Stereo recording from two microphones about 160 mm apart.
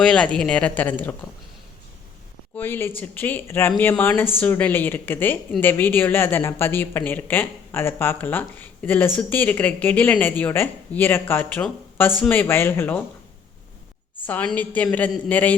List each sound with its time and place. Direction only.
0.0 s speech: 5° left (ahead or behind)
2.6 s speech: 15° left (ahead or behind)
14.3 s speech: 10° left (ahead or behind)